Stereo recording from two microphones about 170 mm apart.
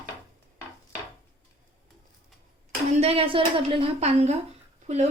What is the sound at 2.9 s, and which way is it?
Speech, 35° right (ahead or behind).